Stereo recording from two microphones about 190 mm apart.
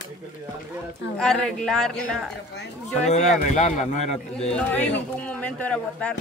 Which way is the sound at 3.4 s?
40° left (ahead or behind).